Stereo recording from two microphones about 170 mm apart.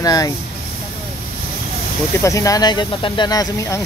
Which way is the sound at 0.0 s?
20° left (ahead or behind).